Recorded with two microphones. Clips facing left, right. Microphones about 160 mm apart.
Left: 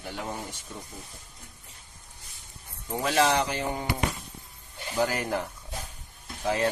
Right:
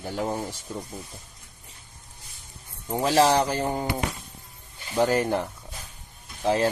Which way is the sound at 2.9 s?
30° right (ahead or behind).